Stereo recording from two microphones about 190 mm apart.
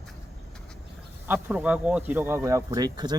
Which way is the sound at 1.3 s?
10° right (ahead or behind).